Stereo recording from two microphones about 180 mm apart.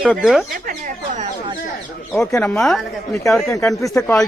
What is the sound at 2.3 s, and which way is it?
Speech, 10° left (ahead or behind).